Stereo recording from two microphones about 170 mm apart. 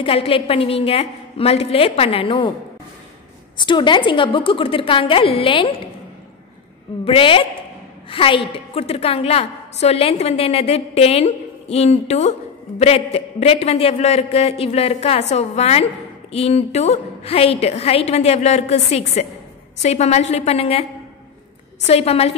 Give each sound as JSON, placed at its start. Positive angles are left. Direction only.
{"t": 0.0, "sound": "a woman's voice", "side_deg": 35}
{"t": 3.5, "sound": "a woman's voice", "side_deg": 25}
{"t": 7.1, "sound": "a woman's voice", "side_deg": 30}
{"t": 21.8, "sound": "a woman's voice", "side_deg": 35}